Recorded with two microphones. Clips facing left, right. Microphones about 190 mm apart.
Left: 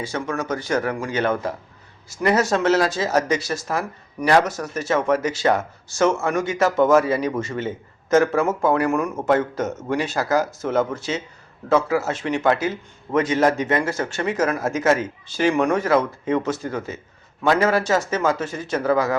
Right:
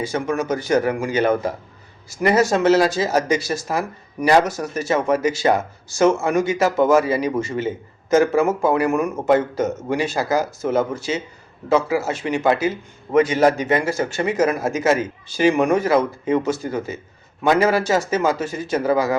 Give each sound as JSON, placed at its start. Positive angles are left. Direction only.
{"t": 0.0, "sound": "speech", "side_deg": -20}